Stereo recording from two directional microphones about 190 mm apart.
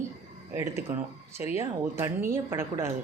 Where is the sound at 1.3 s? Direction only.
15° right (ahead or behind).